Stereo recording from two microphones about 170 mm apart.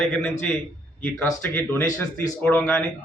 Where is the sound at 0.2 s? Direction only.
10° left (ahead or behind).